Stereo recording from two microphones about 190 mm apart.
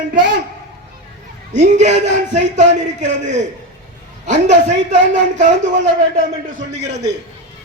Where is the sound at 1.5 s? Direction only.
40° right (ahead or behind).